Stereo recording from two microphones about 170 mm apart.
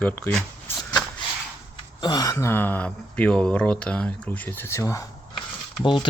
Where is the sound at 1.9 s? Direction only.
25° left (ahead or behind).